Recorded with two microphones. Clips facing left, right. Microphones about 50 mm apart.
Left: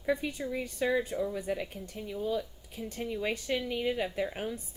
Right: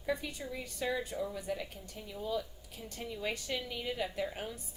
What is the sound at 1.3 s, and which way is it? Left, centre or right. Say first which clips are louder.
Speech: left 5 dB; left.